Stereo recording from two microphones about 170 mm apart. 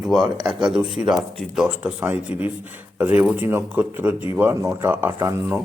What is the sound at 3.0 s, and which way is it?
Speech, 10° right (ahead or behind).